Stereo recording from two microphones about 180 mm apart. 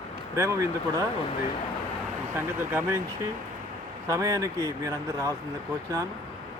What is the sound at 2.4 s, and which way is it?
Speech, 15° right (ahead or behind).